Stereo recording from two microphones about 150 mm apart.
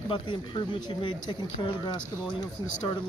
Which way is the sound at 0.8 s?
30° left (ahead or behind).